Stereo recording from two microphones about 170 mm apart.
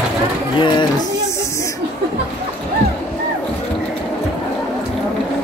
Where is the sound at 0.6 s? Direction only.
25° left (ahead or behind).